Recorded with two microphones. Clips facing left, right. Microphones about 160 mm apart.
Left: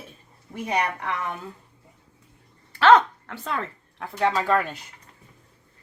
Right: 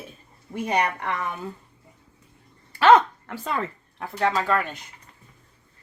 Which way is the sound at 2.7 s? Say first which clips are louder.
Even; 10° right (ahead or behind).